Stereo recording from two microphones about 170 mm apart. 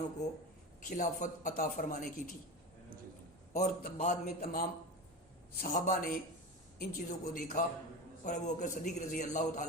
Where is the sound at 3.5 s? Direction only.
50° left (ahead or behind).